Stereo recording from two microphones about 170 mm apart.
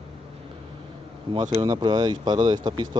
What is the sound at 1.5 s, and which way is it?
Speech, 20° right (ahead or behind).